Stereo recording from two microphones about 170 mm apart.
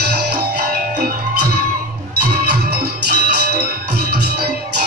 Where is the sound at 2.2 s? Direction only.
65° right (ahead or behind).